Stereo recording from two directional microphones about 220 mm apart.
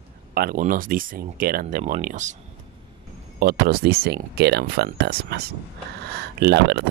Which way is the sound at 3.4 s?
40° right (ahead or behind).